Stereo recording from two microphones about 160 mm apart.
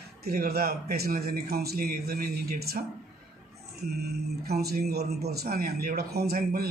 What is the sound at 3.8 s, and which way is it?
A man's voice, 85° right.